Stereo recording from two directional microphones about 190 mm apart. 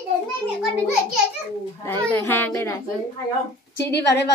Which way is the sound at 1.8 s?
10° left (ahead or behind).